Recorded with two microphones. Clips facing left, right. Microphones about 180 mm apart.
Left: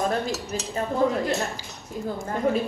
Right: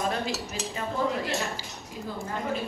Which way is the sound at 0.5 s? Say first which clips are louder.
Left 5 dB; 45° left (ahead or behind).